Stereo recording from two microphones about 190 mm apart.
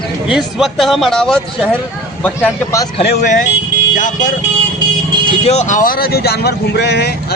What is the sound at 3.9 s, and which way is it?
Speech, 45° left (ahead or behind).